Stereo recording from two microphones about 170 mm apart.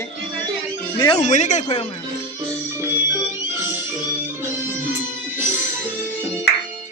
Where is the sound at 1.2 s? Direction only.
45° left (ahead or behind).